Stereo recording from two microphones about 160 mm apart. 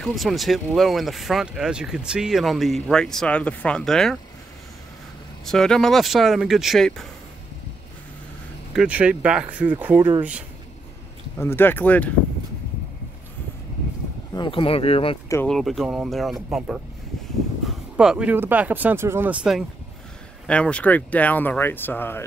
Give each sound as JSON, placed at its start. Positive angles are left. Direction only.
{"t": 0.0, "sound": "speech", "side_deg": 0}
{"t": 5.4, "sound": "speech", "side_deg": 5}
{"t": 8.7, "sound": "speech", "side_deg": -10}
{"t": 11.3, "sound": "speech", "side_deg": 15}
{"t": 14.3, "sound": "speech", "side_deg": 30}
{"t": 15.4, "sound": "speech", "side_deg": 0}
{"t": 17.9, "sound": "speech", "side_deg": -5}
{"t": 20.4, "sound": "speech", "side_deg": 5}